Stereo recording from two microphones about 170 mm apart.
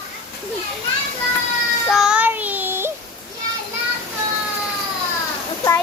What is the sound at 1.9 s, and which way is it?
Child singing, 5° right (ahead or behind).